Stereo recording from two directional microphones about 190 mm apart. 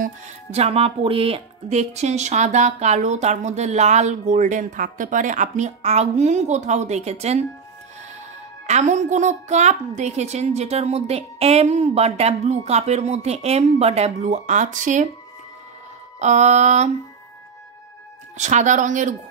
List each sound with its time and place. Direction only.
0.0 s speech: 35° right (ahead or behind)
8.6 s speech: 35° right (ahead or behind)
16.2 s speech: 35° right (ahead or behind)
18.4 s speech: 40° right (ahead or behind)